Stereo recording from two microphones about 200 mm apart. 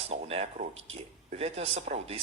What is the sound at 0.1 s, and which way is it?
A man's voice, 30° right (ahead or behind).